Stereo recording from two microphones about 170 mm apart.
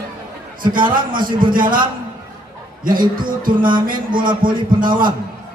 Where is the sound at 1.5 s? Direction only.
55° right (ahead or behind).